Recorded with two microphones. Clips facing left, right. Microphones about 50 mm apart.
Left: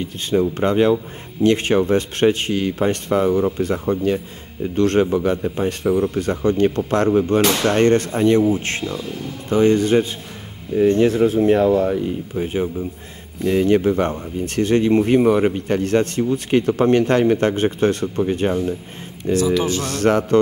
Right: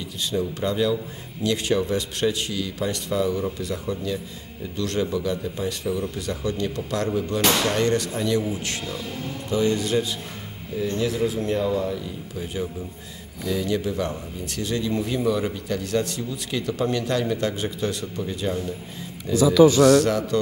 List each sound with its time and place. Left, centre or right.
0.0 s speech: left